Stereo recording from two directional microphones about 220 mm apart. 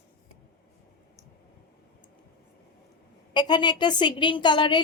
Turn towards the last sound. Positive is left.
turn(degrees=20)  # may be behind; listen again after turning